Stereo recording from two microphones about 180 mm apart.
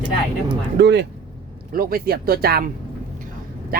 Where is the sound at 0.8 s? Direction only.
70° right (ahead or behind).